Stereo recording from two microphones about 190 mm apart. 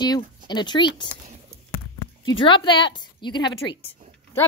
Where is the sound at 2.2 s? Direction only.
25° left (ahead or behind).